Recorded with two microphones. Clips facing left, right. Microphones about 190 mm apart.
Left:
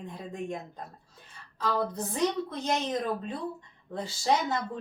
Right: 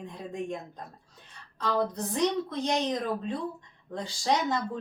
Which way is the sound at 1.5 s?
Centre (ahead or behind).